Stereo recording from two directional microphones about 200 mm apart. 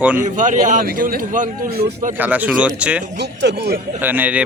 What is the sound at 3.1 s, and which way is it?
Speech, 60° right (ahead or behind).